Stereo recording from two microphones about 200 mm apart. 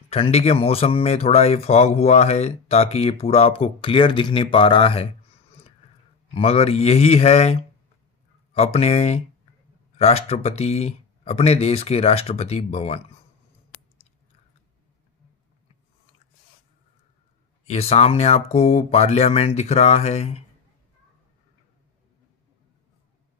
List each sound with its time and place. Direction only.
0.1 s speech: 30° left (ahead or behind)
6.3 s speech: 30° left (ahead or behind)
8.5 s speech: 30° left (ahead or behind)
17.6 s speech: 30° left (ahead or behind)